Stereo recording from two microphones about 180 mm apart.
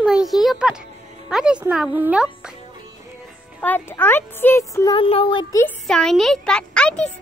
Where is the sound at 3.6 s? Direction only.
10° left (ahead or behind).